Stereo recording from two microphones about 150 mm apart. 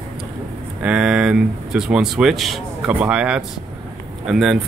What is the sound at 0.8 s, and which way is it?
Speech, 5° right (ahead or behind).